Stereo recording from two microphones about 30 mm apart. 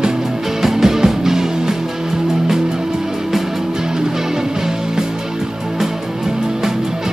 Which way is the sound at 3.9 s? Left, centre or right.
Centre.